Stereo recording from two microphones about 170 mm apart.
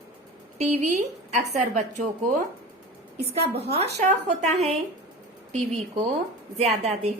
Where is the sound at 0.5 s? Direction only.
45° right (ahead or behind).